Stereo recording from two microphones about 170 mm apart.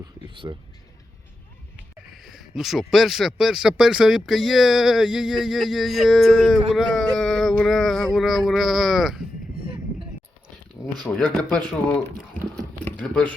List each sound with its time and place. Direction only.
0.4 s speech: 20° right (ahead or behind)
2.2 s speech: centre (ahead or behind)
11.0 s speech: 5° left (ahead or behind)